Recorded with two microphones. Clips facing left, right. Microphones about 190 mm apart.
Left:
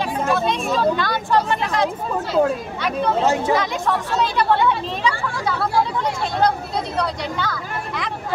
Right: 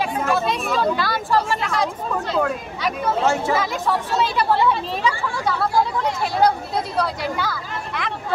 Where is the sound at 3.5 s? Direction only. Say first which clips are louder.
Left 1 dB; 5° right (ahead or behind).